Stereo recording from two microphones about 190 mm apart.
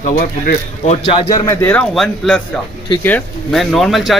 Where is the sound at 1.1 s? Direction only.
25° left (ahead or behind).